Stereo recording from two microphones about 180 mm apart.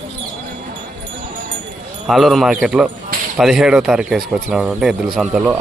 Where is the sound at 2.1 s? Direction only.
Centre (ahead or behind).